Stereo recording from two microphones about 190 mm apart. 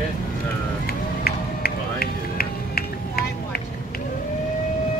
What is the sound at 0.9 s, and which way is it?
Run, 55° left (ahead or behind).